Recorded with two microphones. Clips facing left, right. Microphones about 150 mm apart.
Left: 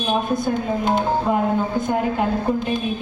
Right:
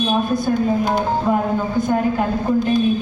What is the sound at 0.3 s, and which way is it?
Speech, 20° left (ahead or behind).